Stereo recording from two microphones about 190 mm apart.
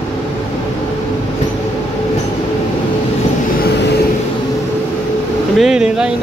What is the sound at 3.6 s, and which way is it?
Vehicle, 60° left (ahead or behind).